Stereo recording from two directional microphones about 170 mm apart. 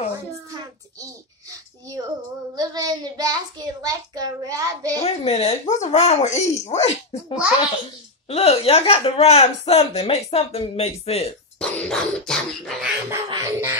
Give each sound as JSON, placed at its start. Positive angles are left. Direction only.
{"t": 2.5, "sound": "a child's voice", "side_deg": -25}
{"t": 5.0, "sound": "speech", "side_deg": 35}
{"t": 11.6, "sound": "bird", "side_deg": 5}
{"t": 13.1, "sound": "music", "side_deg": -15}